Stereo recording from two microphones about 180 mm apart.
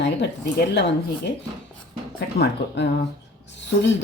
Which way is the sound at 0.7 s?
70° left (ahead or behind).